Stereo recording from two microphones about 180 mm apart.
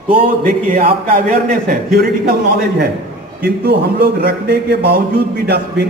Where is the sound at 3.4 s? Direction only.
65° right (ahead or behind).